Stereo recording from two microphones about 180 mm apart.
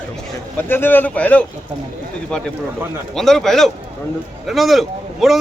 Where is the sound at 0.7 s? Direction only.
10° left (ahead or behind).